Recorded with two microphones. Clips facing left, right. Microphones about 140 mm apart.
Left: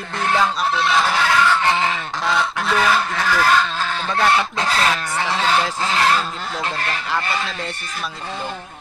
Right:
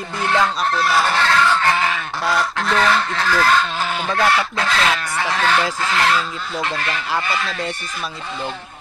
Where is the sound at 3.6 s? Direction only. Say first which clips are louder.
Right 1 dB; 10° right (ahead or behind).